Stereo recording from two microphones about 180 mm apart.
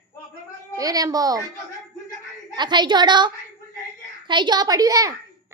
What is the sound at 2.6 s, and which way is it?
A woman's voice, 25° right (ahead or behind).